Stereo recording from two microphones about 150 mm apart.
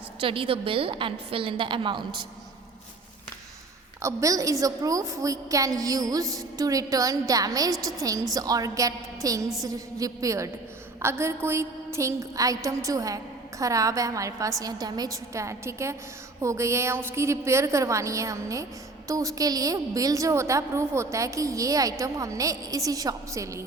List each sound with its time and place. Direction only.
0.2 s a woman's voice: 35° right (ahead or behind)
4.0 s a woman's voice: 20° right (ahead or behind)